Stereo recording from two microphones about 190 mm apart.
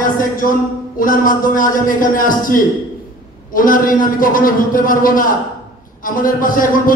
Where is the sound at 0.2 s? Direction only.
45° left (ahead or behind).